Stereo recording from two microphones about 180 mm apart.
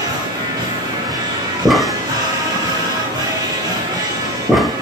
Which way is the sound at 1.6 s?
20° right (ahead or behind).